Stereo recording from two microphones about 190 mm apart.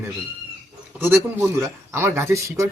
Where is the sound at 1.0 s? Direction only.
10° right (ahead or behind).